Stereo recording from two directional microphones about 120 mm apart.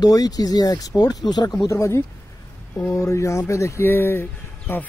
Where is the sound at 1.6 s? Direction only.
25° left (ahead or behind).